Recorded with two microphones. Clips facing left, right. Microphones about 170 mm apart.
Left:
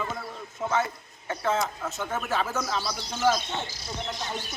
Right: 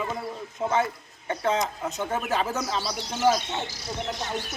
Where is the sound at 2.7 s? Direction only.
30° right (ahead or behind).